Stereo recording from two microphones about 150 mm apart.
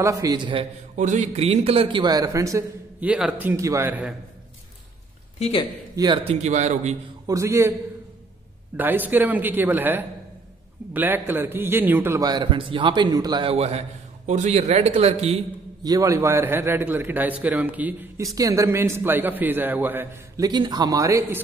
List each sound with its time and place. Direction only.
0.0 s speech: 20° right (ahead or behind)
0.9 s a man's voice: 55° right (ahead or behind); by 3.1 s 20° right (ahead or behind)
3.1 s a man's voice: 10° right (ahead or behind)
5.4 s speech: 35° left (ahead or behind)
5.9 s speech: 30° right (ahead or behind)
6.3 s a man's voice: 50° right (ahead or behind)
7.2 s speech: 20° right (ahead or behind)
8.7 s a man's voice: 10° right (ahead or behind)
12.2 s a man's voice: 30° right (ahead or behind)
13.5 s a man's voice: 45° right (ahead or behind)
15.8 s a man's voice: 25° right (ahead or behind)
20.4 s speech: 25° right (ahead or behind)